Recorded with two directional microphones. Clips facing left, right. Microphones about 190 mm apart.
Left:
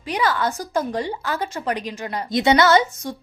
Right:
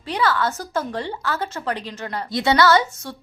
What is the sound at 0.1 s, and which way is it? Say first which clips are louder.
A woman's voice: even; 15° left (ahead or behind).